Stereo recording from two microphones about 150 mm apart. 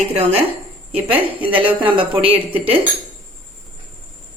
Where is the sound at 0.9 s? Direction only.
40° right (ahead or behind).